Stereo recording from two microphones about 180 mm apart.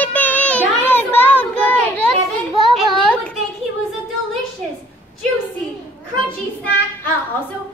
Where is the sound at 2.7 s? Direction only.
Centre (ahead or behind).